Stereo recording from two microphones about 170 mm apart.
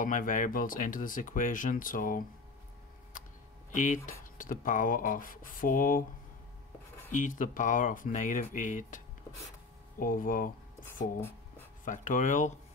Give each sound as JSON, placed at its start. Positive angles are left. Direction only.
{"t": 0.0, "sound": "speech", "side_deg": 50}
{"t": 3.7, "sound": "speech", "side_deg": 50}
{"t": 7.1, "sound": "speech", "side_deg": 50}
{"t": 11.1, "sound": "writing", "side_deg": 15}
{"t": 11.8, "sound": "speech", "side_deg": 50}